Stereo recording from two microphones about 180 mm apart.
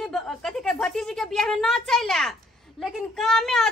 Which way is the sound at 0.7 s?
5° left (ahead or behind).